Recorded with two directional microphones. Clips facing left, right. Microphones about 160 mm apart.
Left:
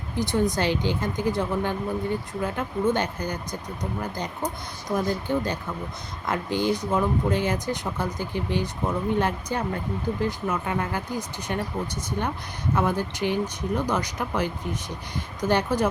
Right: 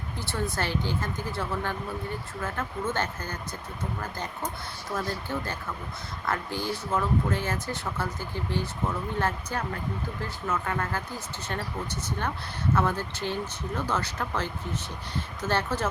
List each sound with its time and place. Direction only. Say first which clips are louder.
0.2 s speech: left 8 dB; 15° left (ahead or behind)
4.9 s speech: left 7 dB; 15° left (ahead or behind)